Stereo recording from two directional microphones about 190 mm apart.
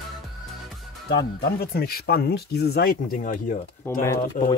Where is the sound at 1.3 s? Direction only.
55° left (ahead or behind).